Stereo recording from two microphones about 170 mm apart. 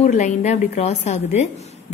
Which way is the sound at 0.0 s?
45° left (ahead or behind).